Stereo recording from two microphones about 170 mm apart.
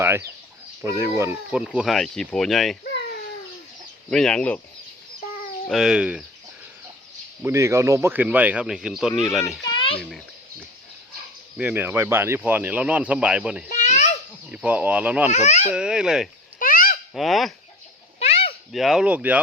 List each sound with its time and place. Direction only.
0.0 s speech: 15° right (ahead or behind); by 2.7 s centre (ahead or behind)
4.1 s speech: 5° left (ahead or behind)
5.6 s speech: centre (ahead or behind)
7.4 s speech: 15° right (ahead or behind)
9.7 s a sound: 30° left (ahead or behind)
11.5 s speech: 10° right (ahead or behind)
13.7 s babbling: 45° left (ahead or behind)
14.5 s speech: 10° right (ahead or behind)
15.3 s speech: 45° left (ahead or behind)
15.7 s speech: 5° right (ahead or behind)
16.6 s a sound: 55° left (ahead or behind)
17.2 s speech: centre (ahead or behind)
18.2 s a sound: 40° left (ahead or behind)
18.7 s speech: centre (ahead or behind)